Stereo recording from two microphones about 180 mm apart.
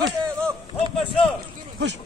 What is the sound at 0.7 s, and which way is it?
Speech, 30° left (ahead or behind).